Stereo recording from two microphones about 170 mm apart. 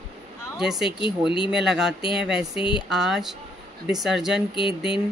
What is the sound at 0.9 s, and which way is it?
Speech, 30° left (ahead or behind).